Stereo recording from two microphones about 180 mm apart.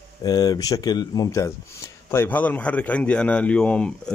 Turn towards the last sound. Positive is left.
turn(degrees=5)  # may be behind; listen again after turning